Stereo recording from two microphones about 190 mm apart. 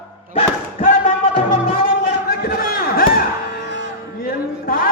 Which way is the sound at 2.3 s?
50° left (ahead or behind).